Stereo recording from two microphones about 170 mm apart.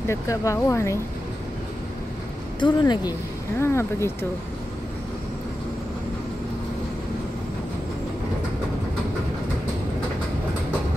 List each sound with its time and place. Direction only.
0.1 s speech: 20° left (ahead or behind)
2.6 s speech: 25° left (ahead or behind)